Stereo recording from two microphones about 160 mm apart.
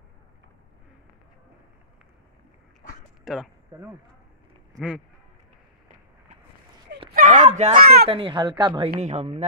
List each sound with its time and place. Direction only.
3.3 s speech: centre (ahead or behind)
4.7 s speech: centre (ahead or behind)
7.1 s a sound: 60° right (ahead or behind)
7.8 s speech: 75° right (ahead or behind)
8.1 s a woman's voice: 30° right (ahead or behind)